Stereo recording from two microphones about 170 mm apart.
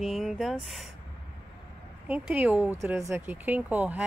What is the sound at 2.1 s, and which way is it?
Speech, 10° right (ahead or behind).